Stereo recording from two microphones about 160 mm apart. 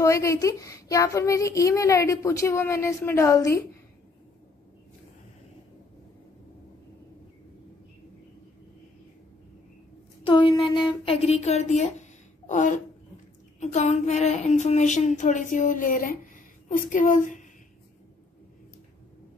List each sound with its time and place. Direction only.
0.0 s speech: 20° left (ahead or behind)
10.2 s a woman's voice: 30° left (ahead or behind); by 17.5 s 50° left (ahead or behind)